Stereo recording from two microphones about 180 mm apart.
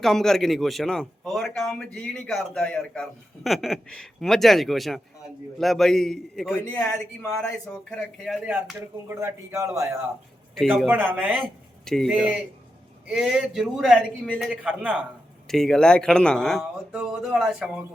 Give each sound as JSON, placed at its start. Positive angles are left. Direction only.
{"t": 0.0, "sound": "a man's voice", "side_deg": 0}
{"t": 9.0, "sound": "a man's voice", "side_deg": -15}